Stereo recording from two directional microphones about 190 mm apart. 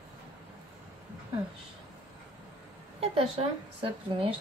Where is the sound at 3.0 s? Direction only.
30° right (ahead or behind).